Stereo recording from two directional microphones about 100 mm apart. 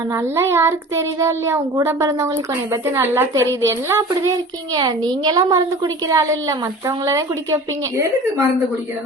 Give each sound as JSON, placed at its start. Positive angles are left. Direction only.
{"t": 0.1, "sound": "a child's voice", "side_deg": -25}